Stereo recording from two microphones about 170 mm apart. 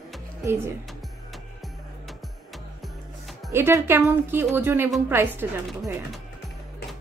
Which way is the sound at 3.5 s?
15° right (ahead or behind).